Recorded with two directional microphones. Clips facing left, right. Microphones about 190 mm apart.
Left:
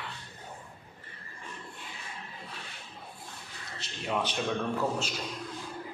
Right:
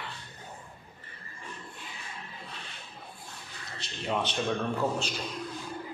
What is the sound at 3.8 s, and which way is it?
Speech, 5° left (ahead or behind).